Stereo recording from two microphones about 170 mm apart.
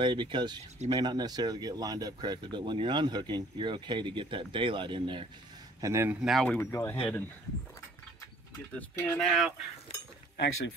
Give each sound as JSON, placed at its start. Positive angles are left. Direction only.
{"t": 0.0, "sound": "speech", "side_deg": -30}
{"t": 5.8, "sound": "speech", "side_deg": -15}
{"t": 6.2, "sound": "speech", "side_deg": 0}
{"t": 6.6, "sound": "speech", "side_deg": 15}
{"t": 8.7, "sound": "speech", "side_deg": 5}